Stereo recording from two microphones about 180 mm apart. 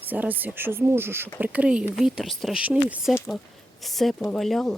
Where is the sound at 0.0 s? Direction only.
10° right (ahead or behind).